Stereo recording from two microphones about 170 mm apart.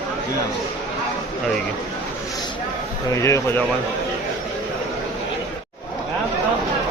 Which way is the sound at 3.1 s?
15° left (ahead or behind).